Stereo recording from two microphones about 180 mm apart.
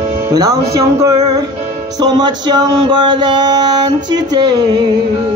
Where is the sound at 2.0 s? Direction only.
25° right (ahead or behind).